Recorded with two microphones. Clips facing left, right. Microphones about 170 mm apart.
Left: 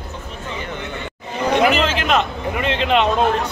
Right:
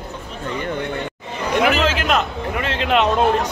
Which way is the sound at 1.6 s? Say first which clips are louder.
Right 1 dB; 5° right (ahead or behind).